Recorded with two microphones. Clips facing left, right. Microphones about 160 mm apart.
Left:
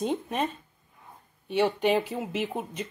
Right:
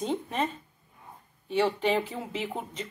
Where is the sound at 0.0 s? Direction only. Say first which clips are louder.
Left 1 dB; 15° left (ahead or behind).